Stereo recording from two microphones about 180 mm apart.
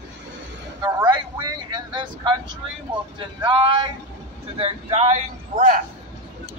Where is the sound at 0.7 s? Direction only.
20° right (ahead or behind).